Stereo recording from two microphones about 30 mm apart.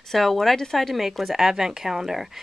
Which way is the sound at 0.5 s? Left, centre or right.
Centre.